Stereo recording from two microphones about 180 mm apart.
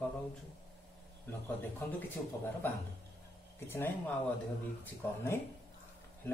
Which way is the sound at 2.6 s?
10° left (ahead or behind).